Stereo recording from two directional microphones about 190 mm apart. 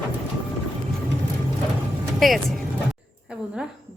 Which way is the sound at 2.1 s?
Centre (ahead or behind).